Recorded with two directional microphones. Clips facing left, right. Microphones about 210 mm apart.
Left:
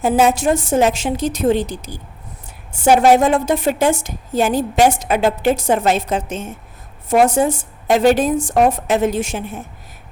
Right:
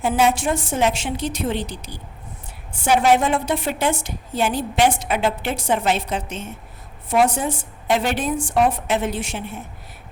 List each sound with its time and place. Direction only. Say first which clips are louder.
0.0 s a woman's voice: left 4 dB; 40° left (ahead or behind)